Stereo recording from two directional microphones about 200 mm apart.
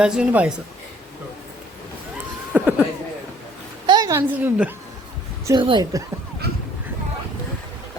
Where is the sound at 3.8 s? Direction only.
20° right (ahead or behind).